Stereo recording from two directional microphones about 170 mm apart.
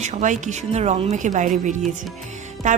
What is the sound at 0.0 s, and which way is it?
A woman's voice, 45° right (ahead or behind).